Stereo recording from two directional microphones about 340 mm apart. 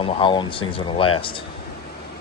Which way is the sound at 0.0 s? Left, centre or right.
Centre.